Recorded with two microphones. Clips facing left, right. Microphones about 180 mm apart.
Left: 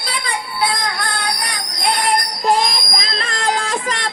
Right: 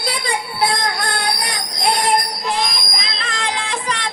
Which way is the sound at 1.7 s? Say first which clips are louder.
Right 1 dB; 25° right (ahead or behind).